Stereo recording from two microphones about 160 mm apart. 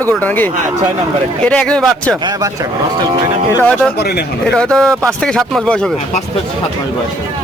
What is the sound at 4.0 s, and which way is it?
Speech, 85° left.